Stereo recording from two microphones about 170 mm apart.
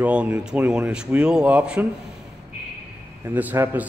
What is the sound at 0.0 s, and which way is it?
A man's voice, 10° right (ahead or behind).